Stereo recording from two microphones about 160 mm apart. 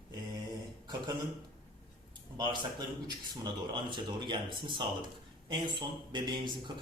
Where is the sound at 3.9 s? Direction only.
30° right (ahead or behind).